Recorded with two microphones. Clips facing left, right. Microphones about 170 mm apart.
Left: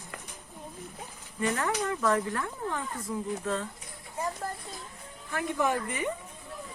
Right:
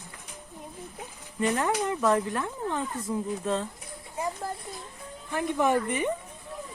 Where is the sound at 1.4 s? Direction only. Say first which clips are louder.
Right 3 dB; 20° right (ahead or behind).